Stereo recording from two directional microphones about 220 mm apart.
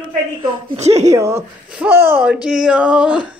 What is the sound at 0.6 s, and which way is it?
Speech, 30° right (ahead or behind).